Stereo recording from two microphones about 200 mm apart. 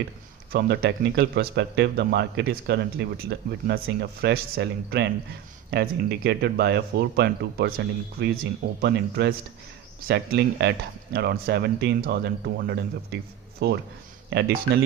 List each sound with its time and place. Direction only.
0.5 s a man's voice: 55° right (ahead or behind)